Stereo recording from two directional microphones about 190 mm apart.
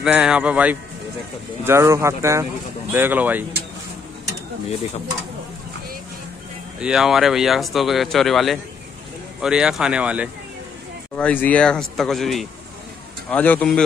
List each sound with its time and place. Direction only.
0.0 s speech: 5° right (ahead or behind)
6.8 s speech: 5° right (ahead or behind)
11.1 s speech: 5° left (ahead or behind)